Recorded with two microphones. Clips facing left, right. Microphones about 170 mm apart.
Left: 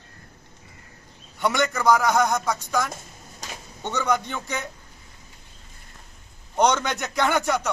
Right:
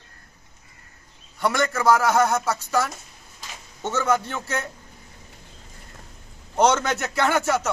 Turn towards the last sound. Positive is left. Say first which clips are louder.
# right 1 dB
turn(degrees=-5)  # may be behind; listen again after turning